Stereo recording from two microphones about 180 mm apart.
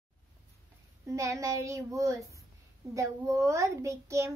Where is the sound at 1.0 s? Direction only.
15° right (ahead or behind).